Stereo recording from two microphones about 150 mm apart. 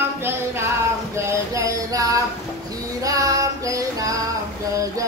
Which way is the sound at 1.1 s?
20° right (ahead or behind).